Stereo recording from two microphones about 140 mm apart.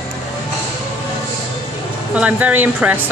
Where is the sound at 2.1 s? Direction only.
10° right (ahead or behind).